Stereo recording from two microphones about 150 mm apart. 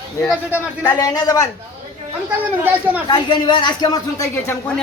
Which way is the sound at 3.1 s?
30° left (ahead or behind).